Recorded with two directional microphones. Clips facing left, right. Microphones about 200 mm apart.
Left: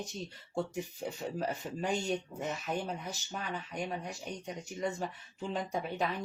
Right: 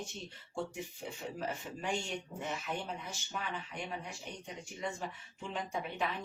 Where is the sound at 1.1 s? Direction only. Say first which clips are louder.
Left 3 dB; 40° left (ahead or behind).